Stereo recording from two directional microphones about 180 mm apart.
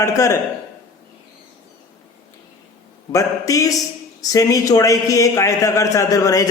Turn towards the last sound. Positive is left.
turn(degrees=20)  # may be behind; listen again after turning